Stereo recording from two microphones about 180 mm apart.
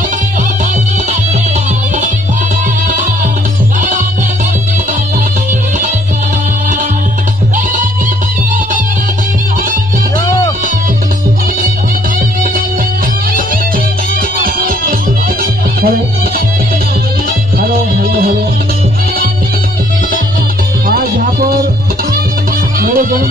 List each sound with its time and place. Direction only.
14.4 s music: 55° right (ahead or behind)
17.6 s music: 55° right (ahead or behind)
20.9 s music: 55° right (ahead or behind)
22.8 s music: 50° right (ahead or behind)